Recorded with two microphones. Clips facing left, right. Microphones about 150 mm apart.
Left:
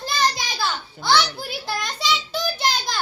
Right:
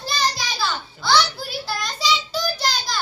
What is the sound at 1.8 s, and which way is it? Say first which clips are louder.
Child singing: right 2 dB; 55° left (ahead or behind).